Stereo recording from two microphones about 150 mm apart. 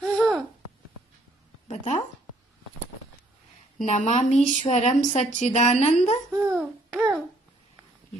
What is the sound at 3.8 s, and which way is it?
Speech, 50° left (ahead or behind).